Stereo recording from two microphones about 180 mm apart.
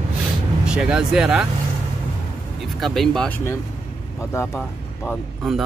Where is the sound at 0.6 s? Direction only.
5° right (ahead or behind).